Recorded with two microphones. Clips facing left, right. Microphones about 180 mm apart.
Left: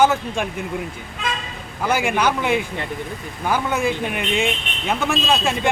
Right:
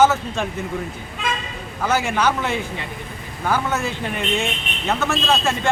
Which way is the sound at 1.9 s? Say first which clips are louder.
Even; 15° left (ahead or behind).